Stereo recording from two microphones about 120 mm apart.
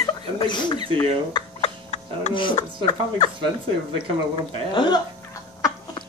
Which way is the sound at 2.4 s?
45° left (ahead or behind).